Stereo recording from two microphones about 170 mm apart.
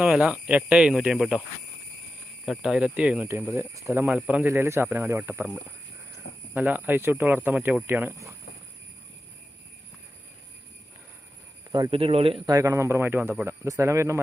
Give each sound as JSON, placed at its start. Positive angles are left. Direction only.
{"t": 0.0, "sound": "speech", "side_deg": -5}
{"t": 2.5, "sound": "speech", "side_deg": -5}
{"t": 6.5, "sound": "speech", "side_deg": -10}
{"t": 11.7, "sound": "speech", "side_deg": -30}
{"t": 12.5, "sound": "speech", "side_deg": -15}